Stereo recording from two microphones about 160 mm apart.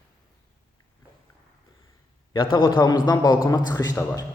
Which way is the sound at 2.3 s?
30° left (ahead or behind).